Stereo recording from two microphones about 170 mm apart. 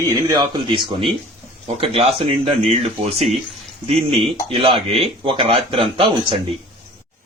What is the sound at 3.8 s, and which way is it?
Speech, 35° right (ahead or behind).